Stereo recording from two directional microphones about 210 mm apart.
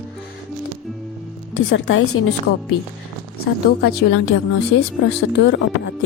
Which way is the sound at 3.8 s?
50° left (ahead or behind).